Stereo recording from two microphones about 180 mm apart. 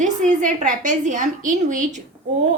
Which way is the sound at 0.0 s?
45° right (ahead or behind).